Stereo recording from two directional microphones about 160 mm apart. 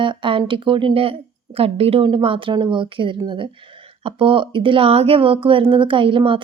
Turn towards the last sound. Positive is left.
turn(degrees=-30)  # may be behind; listen again after turning